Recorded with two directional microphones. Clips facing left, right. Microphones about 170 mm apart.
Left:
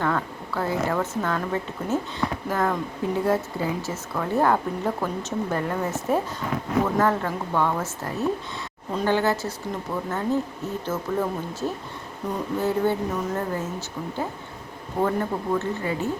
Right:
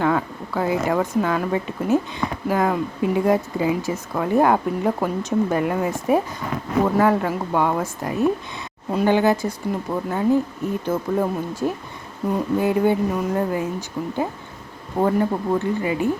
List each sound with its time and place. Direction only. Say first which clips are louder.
0.0 s speech: right 5 dB; 15° right (ahead or behind)